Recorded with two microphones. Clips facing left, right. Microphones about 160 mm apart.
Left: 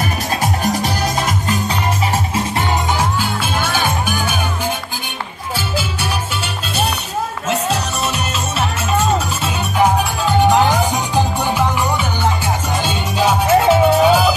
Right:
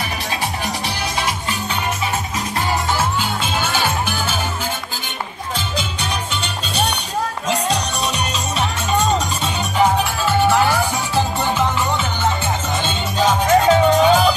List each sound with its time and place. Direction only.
0.4 s music: 45° left (ahead or behind)
3.0 s music: 10° left (ahead or behind)
6.4 s music: 5° left (ahead or behind)
8.5 s music: 5° left (ahead or behind)